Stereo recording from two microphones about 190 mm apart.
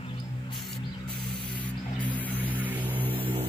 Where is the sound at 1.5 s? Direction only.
10° left (ahead or behind).